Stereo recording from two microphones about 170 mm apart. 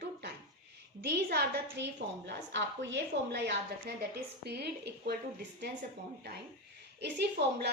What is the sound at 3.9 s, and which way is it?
A woman's voice, 75° right (ahead or behind).